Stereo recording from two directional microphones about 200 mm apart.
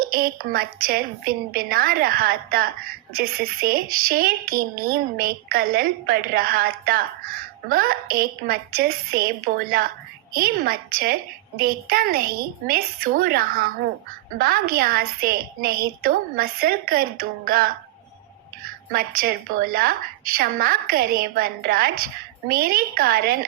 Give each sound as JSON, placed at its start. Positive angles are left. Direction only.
{"t": 0.0, "sound": "speech", "side_deg": -45}
{"t": 18.9, "sound": "speech", "side_deg": -50}